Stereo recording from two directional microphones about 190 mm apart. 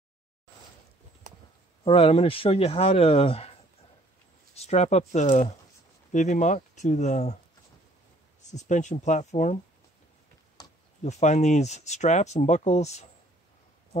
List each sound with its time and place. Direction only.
1.3 s a sound: 40° right (ahead or behind)
1.9 s speech: 30° left (ahead or behind)
4.6 s speech: 35° left (ahead or behind)
8.4 s speech: 40° left (ahead or behind)
10.6 s a sound: 20° left (ahead or behind)
11.0 s speech: 35° left (ahead or behind)